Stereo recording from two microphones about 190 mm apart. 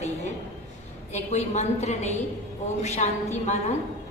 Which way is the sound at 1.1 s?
35° left (ahead or behind).